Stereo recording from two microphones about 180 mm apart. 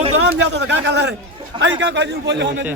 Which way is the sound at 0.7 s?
75° right (ahead or behind).